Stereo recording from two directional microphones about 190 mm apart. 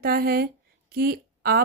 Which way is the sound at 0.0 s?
50° right (ahead or behind).